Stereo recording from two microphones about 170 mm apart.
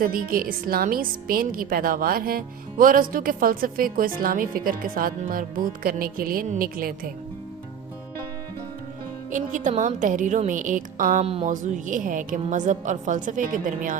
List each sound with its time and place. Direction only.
0.0 s a woman's voice: 60° right (ahead or behind)
9.3 s a woman's voice: 45° right (ahead or behind)